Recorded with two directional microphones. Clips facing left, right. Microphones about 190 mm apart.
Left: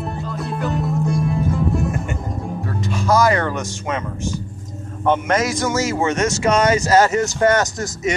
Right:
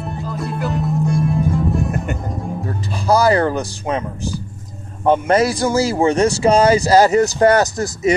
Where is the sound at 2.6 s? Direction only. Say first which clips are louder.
Even; 35° right (ahead or behind).